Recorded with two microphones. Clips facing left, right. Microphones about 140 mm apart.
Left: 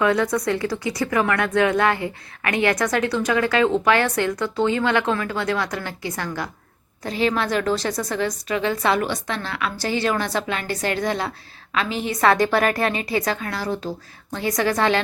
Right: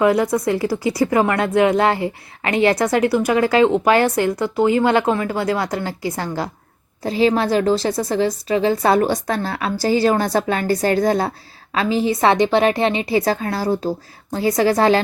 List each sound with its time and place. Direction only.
0.0 s a woman's voice: 25° right (ahead or behind)